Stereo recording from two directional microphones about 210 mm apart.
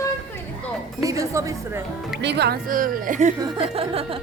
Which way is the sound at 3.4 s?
25° right (ahead or behind).